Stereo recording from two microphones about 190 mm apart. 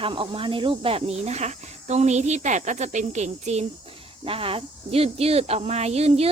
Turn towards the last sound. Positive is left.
turn(degrees=-35)  # may be behind; listen again after turning